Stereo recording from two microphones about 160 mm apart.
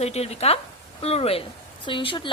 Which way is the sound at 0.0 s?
40° left (ahead or behind).